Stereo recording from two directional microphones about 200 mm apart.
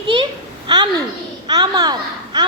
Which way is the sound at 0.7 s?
20° right (ahead or behind).